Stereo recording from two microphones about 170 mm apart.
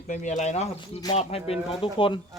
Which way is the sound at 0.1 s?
45° left (ahead or behind).